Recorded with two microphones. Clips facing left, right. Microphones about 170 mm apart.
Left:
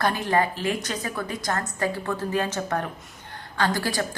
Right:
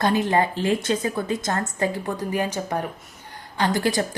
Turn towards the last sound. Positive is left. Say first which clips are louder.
# right 3 dB
turn(degrees=-20)  # may be behind; listen again after turning